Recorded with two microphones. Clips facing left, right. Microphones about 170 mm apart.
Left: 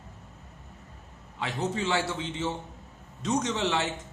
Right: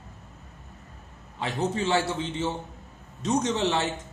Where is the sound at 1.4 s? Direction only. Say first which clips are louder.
Right 3 dB; 35° right (ahead or behind).